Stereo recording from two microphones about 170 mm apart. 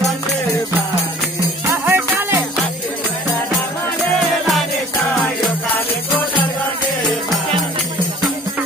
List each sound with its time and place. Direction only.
1.7 s music: 15° right (ahead or behind)